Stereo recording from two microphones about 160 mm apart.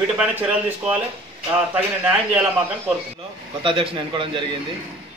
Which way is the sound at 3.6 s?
35° right (ahead or behind).